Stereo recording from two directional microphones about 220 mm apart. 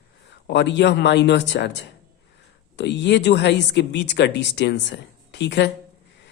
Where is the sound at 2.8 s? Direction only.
50° left (ahead or behind).